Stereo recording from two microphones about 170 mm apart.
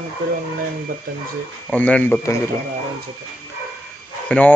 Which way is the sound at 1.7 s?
10° left (ahead or behind).